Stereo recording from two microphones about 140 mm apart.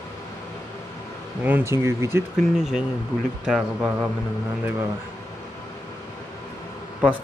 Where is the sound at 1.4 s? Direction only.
15° right (ahead or behind).